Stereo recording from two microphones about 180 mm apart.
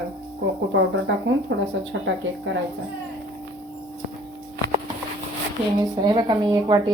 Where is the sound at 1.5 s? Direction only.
90° right.